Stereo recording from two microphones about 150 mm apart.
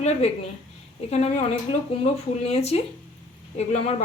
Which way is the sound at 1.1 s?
45° left (ahead or behind).